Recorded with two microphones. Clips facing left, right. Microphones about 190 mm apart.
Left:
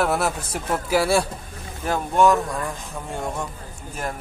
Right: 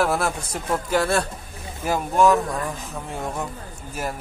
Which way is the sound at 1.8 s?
5° right (ahead or behind).